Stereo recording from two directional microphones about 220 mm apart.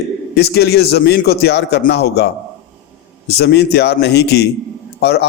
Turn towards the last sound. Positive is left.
turn(degrees=50)  # may be behind; listen again after turning